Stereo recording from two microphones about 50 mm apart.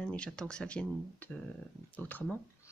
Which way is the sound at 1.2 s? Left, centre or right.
Left.